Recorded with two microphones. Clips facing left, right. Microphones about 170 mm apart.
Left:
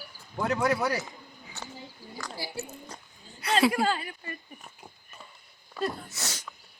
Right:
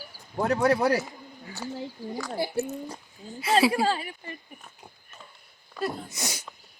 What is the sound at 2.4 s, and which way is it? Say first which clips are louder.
Speech: right 11 dB; 55° right (ahead or behind).